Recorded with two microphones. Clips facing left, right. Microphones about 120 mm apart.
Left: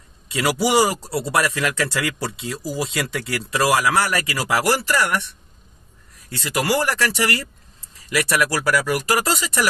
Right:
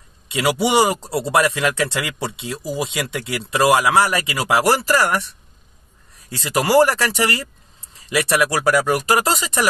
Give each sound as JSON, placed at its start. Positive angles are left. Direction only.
{"t": 0.6, "sound": "speech", "side_deg": -25}
{"t": 6.3, "sound": "speech", "side_deg": -30}